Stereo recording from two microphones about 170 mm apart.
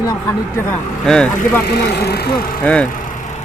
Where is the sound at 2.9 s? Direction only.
50° left (ahead or behind).